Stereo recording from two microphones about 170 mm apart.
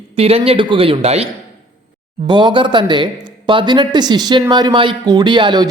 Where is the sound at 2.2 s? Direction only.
25° right (ahead or behind).